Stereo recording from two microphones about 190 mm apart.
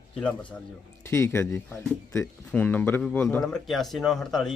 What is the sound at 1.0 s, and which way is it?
Speech, 15° left (ahead or behind).